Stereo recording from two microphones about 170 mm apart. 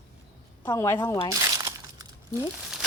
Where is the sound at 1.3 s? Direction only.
20° right (ahead or behind).